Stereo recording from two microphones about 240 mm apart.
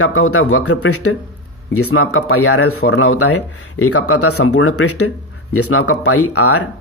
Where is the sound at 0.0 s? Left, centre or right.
Left.